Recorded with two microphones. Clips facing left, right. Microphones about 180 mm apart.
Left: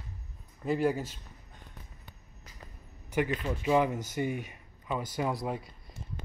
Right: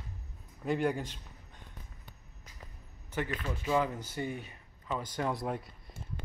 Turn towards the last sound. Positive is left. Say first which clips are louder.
# left 2 dB
turn(degrees=0)  # may be behind; listen again after turning